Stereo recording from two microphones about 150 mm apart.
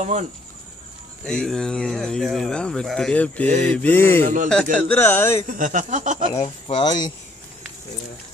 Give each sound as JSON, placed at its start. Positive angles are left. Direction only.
{"t": 0.0, "sound": "speech", "side_deg": -50}
{"t": 1.2, "sound": "speech", "side_deg": 5}
{"t": 5.5, "sound": "speech", "side_deg": -60}
{"t": 6.4, "sound": "speech", "side_deg": 30}